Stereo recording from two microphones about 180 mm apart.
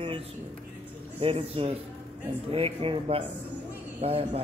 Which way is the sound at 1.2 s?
30° right (ahead or behind).